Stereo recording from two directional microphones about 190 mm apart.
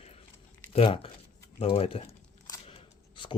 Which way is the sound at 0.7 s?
30° left (ahead or behind).